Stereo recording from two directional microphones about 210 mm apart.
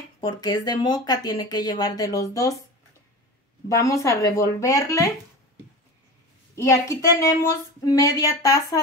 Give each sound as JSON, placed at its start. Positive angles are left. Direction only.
{"t": 0.2, "sound": "speech", "side_deg": 20}
{"t": 3.6, "sound": "speech", "side_deg": 15}
{"t": 6.5, "sound": "a woman's voice", "side_deg": 15}